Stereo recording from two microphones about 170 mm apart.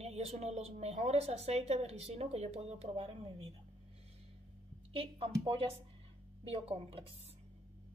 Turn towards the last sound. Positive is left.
turn(degrees=-35)  # may be behind; listen again after turning